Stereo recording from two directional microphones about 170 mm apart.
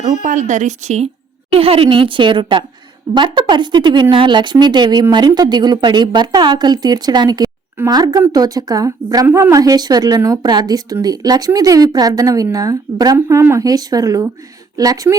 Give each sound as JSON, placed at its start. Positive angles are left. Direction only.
{"t": 0.0, "sound": "a woman's voice", "side_deg": -45}